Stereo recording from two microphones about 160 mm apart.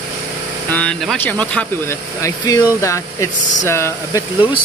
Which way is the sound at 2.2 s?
20° left (ahead or behind).